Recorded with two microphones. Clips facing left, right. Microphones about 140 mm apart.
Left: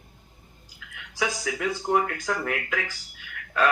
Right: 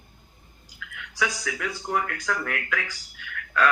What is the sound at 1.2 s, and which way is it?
Speech, 25° left (ahead or behind).